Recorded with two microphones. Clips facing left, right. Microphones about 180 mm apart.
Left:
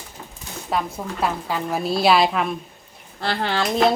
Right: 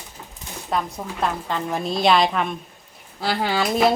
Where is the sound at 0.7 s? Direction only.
5° left (ahead or behind).